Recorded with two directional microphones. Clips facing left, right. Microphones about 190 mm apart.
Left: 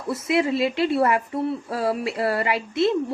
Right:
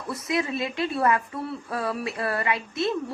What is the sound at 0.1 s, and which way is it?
Speech, 25° left (ahead or behind).